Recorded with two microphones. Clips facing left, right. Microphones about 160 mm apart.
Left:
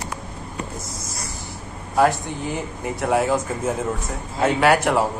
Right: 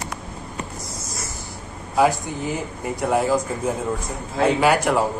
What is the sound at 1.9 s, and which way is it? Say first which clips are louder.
Speech: even; centre (ahead or behind).